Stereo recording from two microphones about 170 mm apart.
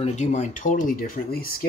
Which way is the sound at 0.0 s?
45° left (ahead or behind).